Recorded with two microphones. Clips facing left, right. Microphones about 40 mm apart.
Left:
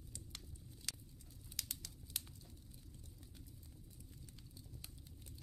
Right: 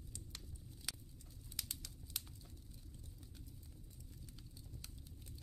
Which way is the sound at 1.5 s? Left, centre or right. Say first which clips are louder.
Even; centre.